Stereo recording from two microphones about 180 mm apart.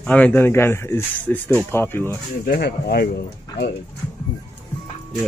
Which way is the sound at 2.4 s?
60° left (ahead or behind).